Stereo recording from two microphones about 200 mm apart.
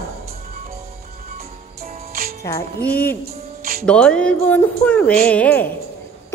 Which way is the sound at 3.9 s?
5° left (ahead or behind).